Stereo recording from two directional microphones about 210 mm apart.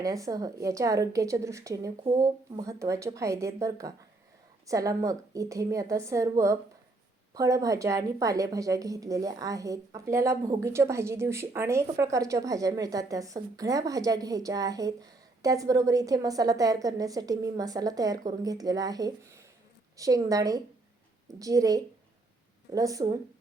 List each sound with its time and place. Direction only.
0.0 s a woman's voice: 15° right (ahead or behind)